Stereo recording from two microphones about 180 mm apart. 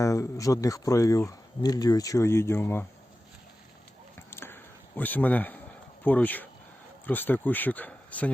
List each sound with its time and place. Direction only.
0.0 s speech: 15° left (ahead or behind)
4.3 s a sound: 10° left (ahead or behind)
6.1 s speech: 10° left (ahead or behind)